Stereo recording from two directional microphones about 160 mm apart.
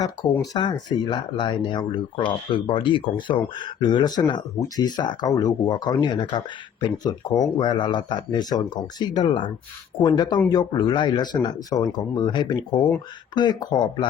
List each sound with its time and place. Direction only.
0.5 s speech: 30° left (ahead or behind)